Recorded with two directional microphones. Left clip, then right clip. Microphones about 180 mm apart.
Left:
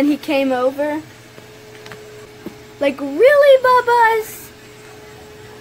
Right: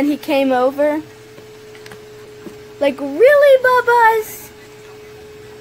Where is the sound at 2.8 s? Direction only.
10° right (ahead or behind).